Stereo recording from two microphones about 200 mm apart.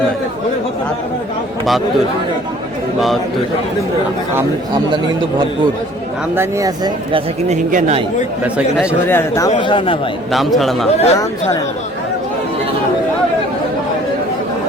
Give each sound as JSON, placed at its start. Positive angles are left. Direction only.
{"t": 4.4, "sound": "speech", "side_deg": -20}
{"t": 6.3, "sound": "speech", "side_deg": -15}
{"t": 7.5, "sound": "speech", "side_deg": -40}
{"t": 8.5, "sound": "a man's voice", "side_deg": -5}
{"t": 9.0, "sound": "speech", "side_deg": 15}
{"t": 9.6, "sound": "speech", "side_deg": 25}
{"t": 10.3, "sound": "a man's voice", "side_deg": 0}
{"t": 10.8, "sound": "speech", "side_deg": 30}